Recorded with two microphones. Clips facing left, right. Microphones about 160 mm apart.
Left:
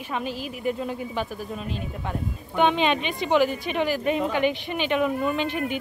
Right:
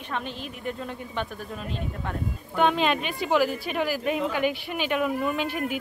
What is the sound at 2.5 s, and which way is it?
A woman's voice, centre (ahead or behind).